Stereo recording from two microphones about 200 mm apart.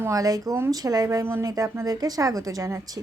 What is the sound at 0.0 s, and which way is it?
Speech, 15° right (ahead or behind).